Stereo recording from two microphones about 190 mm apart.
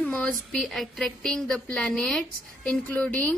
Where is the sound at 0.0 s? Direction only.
5° left (ahead or behind).